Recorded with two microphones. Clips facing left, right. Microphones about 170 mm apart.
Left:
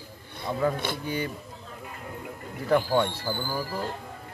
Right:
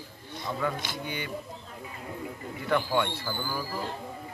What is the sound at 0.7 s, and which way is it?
Speech, 55° left (ahead or behind).